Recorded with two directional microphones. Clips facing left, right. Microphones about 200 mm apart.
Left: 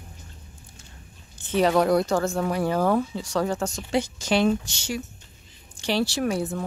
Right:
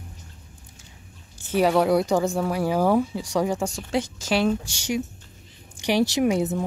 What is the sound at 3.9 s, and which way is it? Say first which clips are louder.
A woman's voice: left 2 dB; centre (ahead or behind).